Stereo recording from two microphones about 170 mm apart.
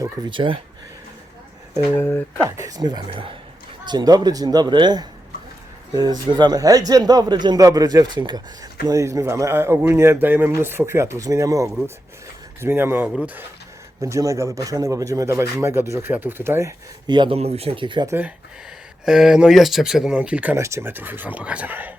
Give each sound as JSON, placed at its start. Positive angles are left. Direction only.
{"t": 0.0, "sound": "a man's voice", "side_deg": -30}
{"t": 2.0, "sound": "speech", "side_deg": 10}
{"t": 2.4, "sound": "a man's voice", "side_deg": -20}
{"t": 19.0, "sound": "speech", "side_deg": -5}